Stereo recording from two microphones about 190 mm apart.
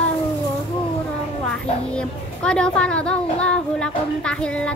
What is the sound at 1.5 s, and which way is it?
A child's voice, 5° left (ahead or behind).